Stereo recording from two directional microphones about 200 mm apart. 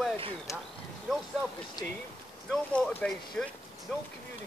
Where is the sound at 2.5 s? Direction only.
5° left (ahead or behind).